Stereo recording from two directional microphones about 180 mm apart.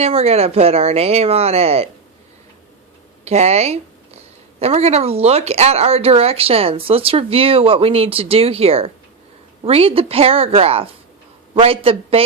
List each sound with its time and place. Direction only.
0.0 s speech: 35° right (ahead or behind)
3.2 s speech: 35° right (ahead or behind)